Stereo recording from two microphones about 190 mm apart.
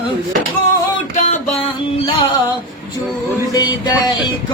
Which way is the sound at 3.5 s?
20° left (ahead or behind).